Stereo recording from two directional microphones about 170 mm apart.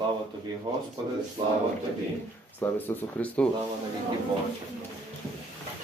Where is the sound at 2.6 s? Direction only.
10° left (ahead or behind).